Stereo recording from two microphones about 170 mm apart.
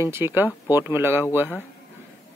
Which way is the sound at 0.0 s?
15° right (ahead or behind).